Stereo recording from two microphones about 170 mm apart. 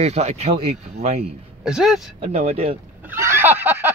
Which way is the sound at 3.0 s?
15° right (ahead or behind).